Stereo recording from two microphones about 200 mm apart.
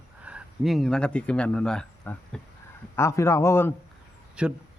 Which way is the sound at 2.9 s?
15° left (ahead or behind).